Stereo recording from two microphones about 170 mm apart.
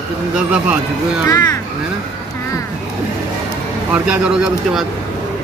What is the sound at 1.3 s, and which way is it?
Speech, 20° left (ahead or behind).